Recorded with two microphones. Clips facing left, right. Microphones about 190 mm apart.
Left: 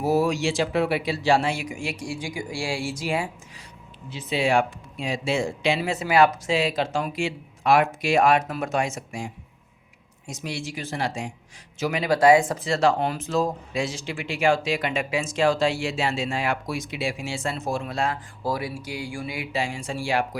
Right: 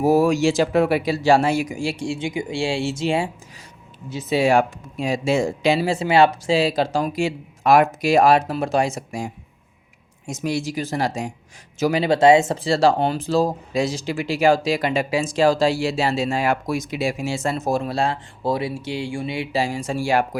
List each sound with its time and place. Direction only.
0.0 s speech: 50° right (ahead or behind); by 3.2 s 25° right (ahead or behind)
4.1 s speech: 40° right (ahead or behind)